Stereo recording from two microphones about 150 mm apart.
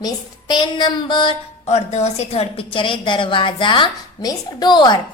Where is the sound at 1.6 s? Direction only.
45° left (ahead or behind); by 4.9 s 30° left (ahead or behind).